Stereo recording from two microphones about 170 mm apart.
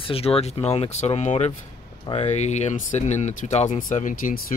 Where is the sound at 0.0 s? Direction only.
35° left (ahead or behind).